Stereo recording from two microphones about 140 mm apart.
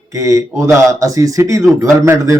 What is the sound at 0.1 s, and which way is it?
Speech, 20° right (ahead or behind).